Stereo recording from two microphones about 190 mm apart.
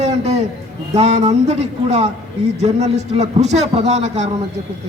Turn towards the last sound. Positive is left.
turn(degrees=-35)  # may be behind; listen again after turning